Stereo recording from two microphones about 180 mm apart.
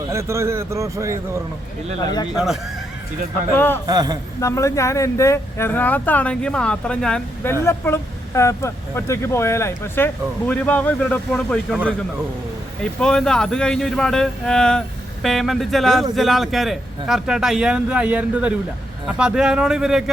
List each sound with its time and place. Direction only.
0.1 s a man's voice: 15° right (ahead or behind)
2.3 s speech: centre (ahead or behind)
3.5 s speech: 10° left (ahead or behind)
3.8 s a man's voice: 20° right (ahead or behind)
4.4 s speech: 15° left (ahead or behind)
12.8 s speech: 5° left (ahead or behind)